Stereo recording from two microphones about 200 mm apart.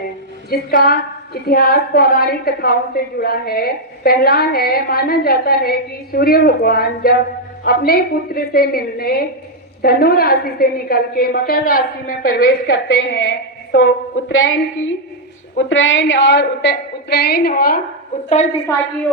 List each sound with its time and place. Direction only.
0.5 s a woman's voice: 50° left (ahead or behind)
12.7 s a woman's voice: 65° left (ahead or behind); by 17.7 s 45° left (ahead or behind)
18.3 s a woman's voice: 35° left (ahead or behind)